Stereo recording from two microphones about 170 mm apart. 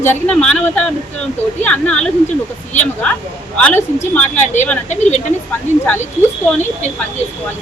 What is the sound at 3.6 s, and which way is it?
Speech, 10° left (ahead or behind).